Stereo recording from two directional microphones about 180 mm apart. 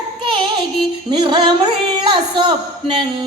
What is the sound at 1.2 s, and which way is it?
Music, 25° right (ahead or behind).